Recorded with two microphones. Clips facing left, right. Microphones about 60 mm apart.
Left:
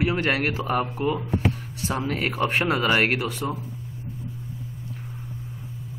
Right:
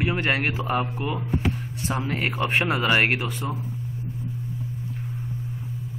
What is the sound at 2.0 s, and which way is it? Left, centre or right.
Speech, centre.